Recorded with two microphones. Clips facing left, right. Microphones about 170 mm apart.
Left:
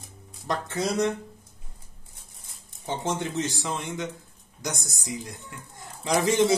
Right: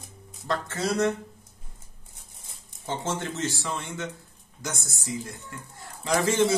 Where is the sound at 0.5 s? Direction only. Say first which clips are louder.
Even; 15° left (ahead or behind).